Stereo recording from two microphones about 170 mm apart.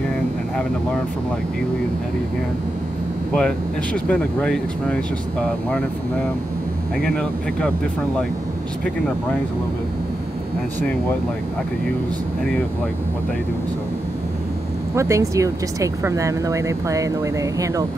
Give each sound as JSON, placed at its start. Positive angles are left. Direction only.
{"t": 3.3, "sound": "speech", "side_deg": 5}
{"t": 7.0, "sound": "speech", "side_deg": 5}
{"t": 15.0, "sound": "speech", "side_deg": -15}